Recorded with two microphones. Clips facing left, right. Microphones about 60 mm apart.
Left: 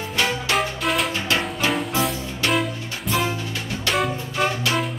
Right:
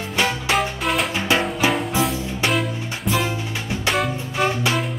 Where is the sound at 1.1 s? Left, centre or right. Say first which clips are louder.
Right 3 dB; centre.